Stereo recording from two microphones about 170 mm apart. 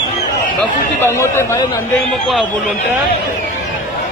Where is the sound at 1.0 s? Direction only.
15° left (ahead or behind).